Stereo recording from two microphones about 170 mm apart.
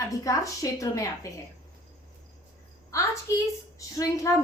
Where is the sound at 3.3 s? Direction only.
15° left (ahead or behind).